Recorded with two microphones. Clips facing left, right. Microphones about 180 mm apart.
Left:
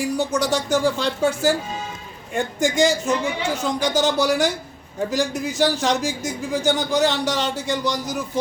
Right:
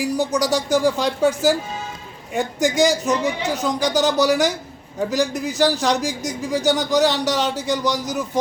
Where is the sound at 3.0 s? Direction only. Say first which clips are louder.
Right 2 dB; 40° right (ahead or behind).